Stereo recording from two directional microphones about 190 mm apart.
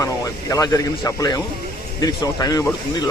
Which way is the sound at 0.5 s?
20° left (ahead or behind).